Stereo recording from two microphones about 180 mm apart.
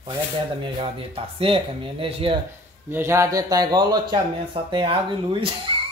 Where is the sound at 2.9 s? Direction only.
15° right (ahead or behind).